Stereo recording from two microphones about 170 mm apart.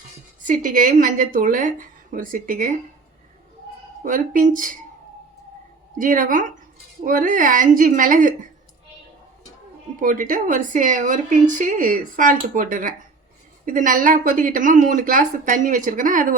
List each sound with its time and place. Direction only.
0.4 s a woman's voice: 50° right (ahead or behind)
4.0 s a woman's voice: 50° right (ahead or behind)
6.0 s a woman's voice: 55° right (ahead or behind)
10.0 s a woman's voice: 50° right (ahead or behind)
13.7 s a woman's voice: 50° right (ahead or behind)